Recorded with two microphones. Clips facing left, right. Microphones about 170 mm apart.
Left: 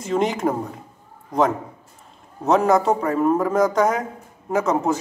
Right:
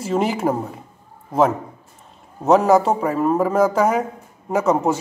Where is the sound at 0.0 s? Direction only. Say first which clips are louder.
Right 1 dB; 5° right (ahead or behind).